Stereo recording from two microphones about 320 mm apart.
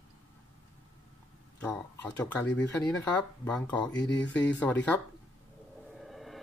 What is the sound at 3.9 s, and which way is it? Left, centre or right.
Speech, left.